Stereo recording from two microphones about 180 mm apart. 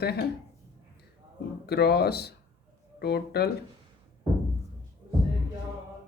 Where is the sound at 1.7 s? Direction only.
65° left (ahead or behind).